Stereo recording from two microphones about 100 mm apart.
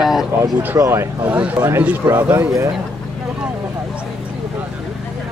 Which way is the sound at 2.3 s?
35° right (ahead or behind).